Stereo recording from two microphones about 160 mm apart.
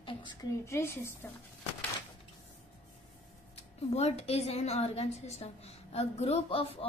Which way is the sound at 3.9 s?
40° left (ahead or behind).